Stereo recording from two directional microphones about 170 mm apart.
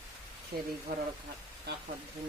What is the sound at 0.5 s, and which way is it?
Speech, 65° right (ahead or behind).